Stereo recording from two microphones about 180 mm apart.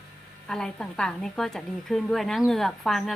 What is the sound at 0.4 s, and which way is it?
A woman's voice, 5° left (ahead or behind).